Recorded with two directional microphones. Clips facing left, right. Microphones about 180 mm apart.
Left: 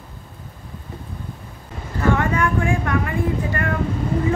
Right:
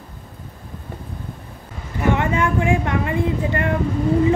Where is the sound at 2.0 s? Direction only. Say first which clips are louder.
Even; 20° right (ahead or behind).